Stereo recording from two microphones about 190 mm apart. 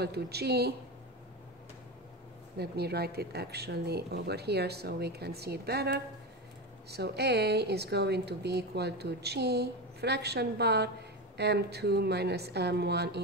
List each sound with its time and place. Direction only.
0.0 s a woman's voice: 60° right (ahead or behind)
2.5 s a woman's voice: 60° right (ahead or behind)